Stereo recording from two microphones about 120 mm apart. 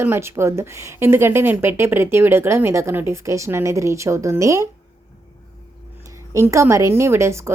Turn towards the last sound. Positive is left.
turn(degrees=-25)  # may be behind; listen again after turning